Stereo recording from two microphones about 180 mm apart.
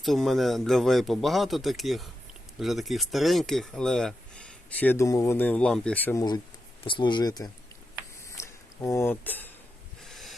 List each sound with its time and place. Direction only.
0.0 s speech: centre (ahead or behind)
6.1 s speech: 20° left (ahead or behind)
8.4 s a sound: 15° left (ahead or behind); by 10.3 s centre (ahead or behind)